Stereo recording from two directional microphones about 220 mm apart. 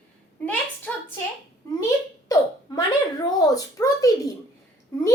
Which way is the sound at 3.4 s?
15° left (ahead or behind).